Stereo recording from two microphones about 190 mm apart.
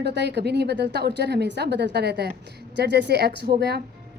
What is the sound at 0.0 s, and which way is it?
A woman's voice, 60° right (ahead or behind).